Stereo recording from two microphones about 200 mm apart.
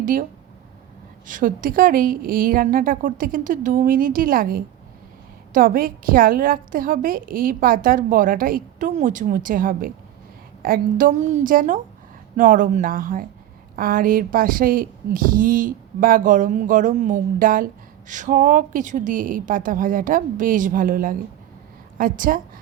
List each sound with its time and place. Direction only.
0.0 s speech: 45° right (ahead or behind)
1.3 s a woman's voice: 45° right (ahead or behind)